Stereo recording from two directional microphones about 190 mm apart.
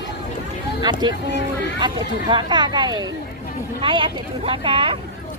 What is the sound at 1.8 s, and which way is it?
Speech, 25° right (ahead or behind).